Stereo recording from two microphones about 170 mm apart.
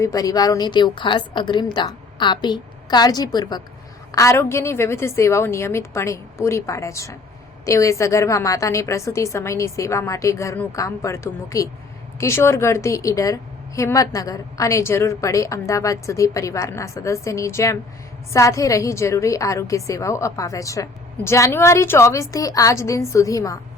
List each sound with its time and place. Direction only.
0.0 s a woman's voice: 20° left (ahead or behind)